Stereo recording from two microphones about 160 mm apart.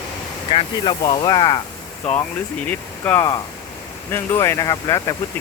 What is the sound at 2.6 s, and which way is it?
Speech, 10° left (ahead or behind).